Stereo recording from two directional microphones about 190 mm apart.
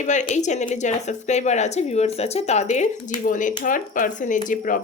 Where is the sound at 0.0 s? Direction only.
40° left (ahead or behind).